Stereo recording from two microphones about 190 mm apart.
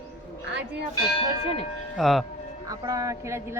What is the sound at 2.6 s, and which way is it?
Speech, 20° right (ahead or behind).